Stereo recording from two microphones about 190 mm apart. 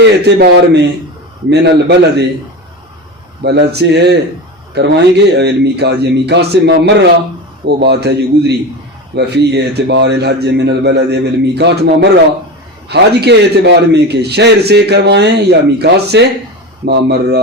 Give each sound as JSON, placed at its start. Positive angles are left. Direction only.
{"t": 0.0, "sound": "a man's voice", "side_deg": -60}
{"t": 3.4, "sound": "a man's voice", "side_deg": -60}